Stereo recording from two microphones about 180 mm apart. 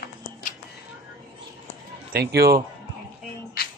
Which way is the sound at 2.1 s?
60° right (ahead or behind).